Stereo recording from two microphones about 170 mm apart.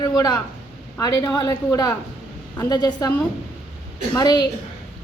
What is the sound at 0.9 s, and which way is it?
A woman's voice, 20° left (ahead or behind).